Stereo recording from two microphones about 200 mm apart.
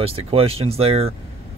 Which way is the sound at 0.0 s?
30° right (ahead or behind).